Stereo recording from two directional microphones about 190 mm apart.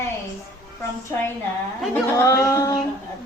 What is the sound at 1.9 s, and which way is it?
Speech, 15° left (ahead or behind).